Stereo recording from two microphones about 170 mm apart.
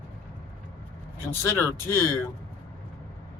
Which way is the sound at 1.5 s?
15° left (ahead or behind).